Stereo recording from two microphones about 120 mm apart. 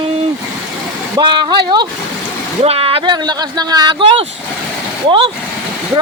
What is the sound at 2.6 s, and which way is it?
Speech, 55° right (ahead or behind).